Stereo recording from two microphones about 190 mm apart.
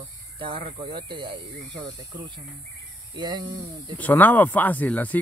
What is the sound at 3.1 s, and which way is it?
Speech, 25° right (ahead or behind).